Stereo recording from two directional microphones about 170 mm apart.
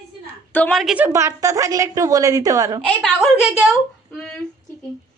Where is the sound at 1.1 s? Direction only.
15° right (ahead or behind).